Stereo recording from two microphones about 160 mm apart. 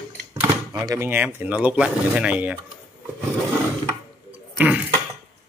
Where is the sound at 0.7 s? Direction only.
20° right (ahead or behind).